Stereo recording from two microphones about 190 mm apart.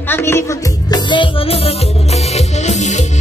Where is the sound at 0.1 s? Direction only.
15° left (ahead or behind).